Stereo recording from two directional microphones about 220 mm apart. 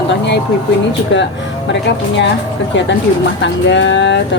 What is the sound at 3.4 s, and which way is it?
Speech, 55° left (ahead or behind).